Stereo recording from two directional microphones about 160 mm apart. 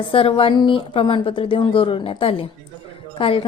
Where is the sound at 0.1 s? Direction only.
35° left (ahead or behind).